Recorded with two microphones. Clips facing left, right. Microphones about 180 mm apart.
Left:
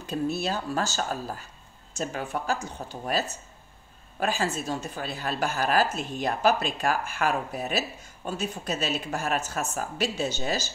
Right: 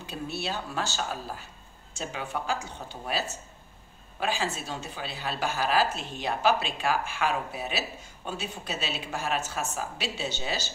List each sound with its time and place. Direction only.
0.0 s a woman's voice: 40° left (ahead or behind)